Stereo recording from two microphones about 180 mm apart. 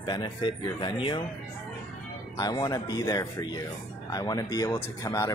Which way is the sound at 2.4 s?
20° left (ahead or behind).